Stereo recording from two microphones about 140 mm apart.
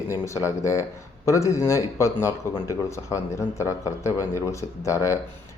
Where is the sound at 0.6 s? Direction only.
20° left (ahead or behind).